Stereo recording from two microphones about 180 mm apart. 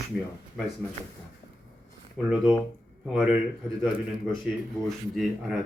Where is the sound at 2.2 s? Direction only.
Centre (ahead or behind).